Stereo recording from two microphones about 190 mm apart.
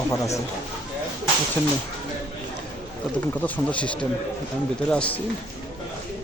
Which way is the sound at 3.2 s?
10° left (ahead or behind).